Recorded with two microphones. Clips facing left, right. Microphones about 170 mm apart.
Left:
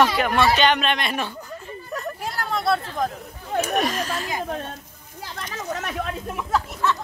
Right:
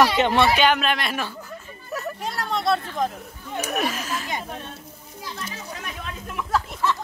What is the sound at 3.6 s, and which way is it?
Speech, 5° right (ahead or behind).